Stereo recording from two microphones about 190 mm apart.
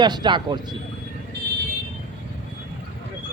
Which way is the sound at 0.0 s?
20° right (ahead or behind).